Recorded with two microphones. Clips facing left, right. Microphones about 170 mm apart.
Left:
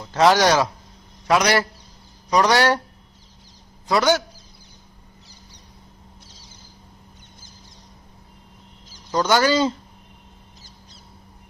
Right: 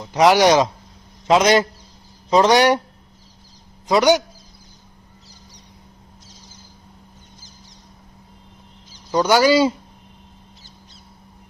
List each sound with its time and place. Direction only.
0.0 s speech: 15° right (ahead or behind)
3.8 s speech: 20° right (ahead or behind)
9.1 s speech: 10° right (ahead or behind)